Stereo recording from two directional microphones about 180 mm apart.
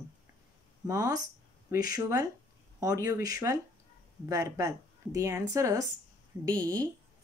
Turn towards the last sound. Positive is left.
turn(degrees=-20)  # may be behind; listen again after turning